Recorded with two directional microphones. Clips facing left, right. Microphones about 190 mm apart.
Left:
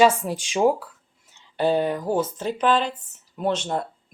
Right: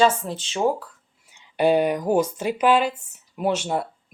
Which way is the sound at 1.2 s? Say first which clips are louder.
Right 3 dB; 10° right (ahead or behind).